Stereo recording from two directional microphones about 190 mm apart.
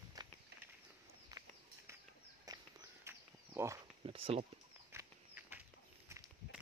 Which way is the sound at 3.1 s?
15° right (ahead or behind).